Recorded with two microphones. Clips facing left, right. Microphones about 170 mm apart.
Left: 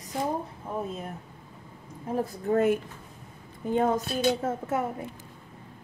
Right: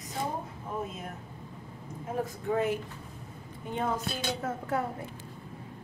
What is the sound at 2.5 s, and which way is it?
Speech, 50° left (ahead or behind).